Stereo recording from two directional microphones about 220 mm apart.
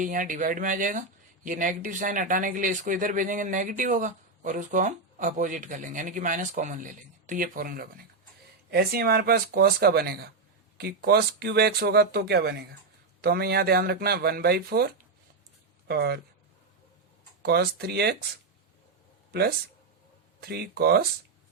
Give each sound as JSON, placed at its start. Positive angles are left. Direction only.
{"t": 0.0, "sound": "speech", "side_deg": -35}
{"t": 15.9, "sound": "speech", "side_deg": -45}
{"t": 17.4, "sound": "speech", "side_deg": -45}
{"t": 19.3, "sound": "speech", "side_deg": -45}